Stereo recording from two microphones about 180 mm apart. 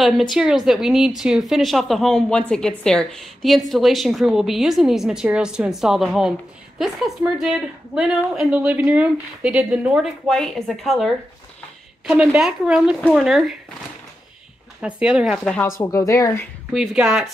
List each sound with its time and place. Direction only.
0.0 s a woman's voice: centre (ahead or behind)
14.8 s a woman's voice: 5° right (ahead or behind)
15.8 s a woman's voice: 20° left (ahead or behind)
16.7 s a woman's voice: 5° right (ahead or behind)